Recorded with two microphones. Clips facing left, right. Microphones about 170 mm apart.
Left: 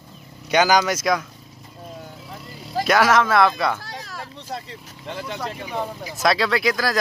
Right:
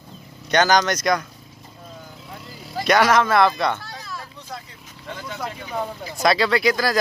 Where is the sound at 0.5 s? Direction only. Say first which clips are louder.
Even; 10° left (ahead or behind).